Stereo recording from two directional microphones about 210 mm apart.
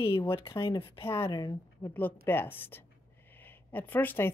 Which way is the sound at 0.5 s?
25° left (ahead or behind).